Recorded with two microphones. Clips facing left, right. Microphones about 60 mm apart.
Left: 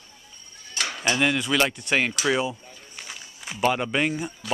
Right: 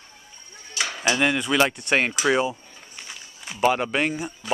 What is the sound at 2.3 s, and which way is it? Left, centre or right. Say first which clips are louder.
Speech: right 3 dB; centre.